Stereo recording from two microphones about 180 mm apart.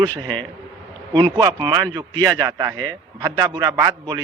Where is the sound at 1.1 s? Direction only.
25° right (ahead or behind).